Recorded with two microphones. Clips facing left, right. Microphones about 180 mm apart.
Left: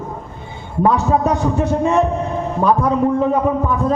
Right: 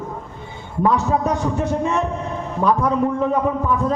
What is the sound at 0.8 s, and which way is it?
A man's voice, 30° left (ahead or behind).